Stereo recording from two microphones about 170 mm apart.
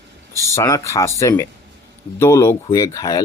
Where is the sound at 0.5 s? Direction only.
15° left (ahead or behind).